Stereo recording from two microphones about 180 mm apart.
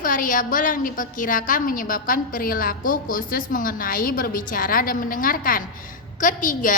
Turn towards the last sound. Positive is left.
turn(degrees=50)  # may be behind; listen again after turning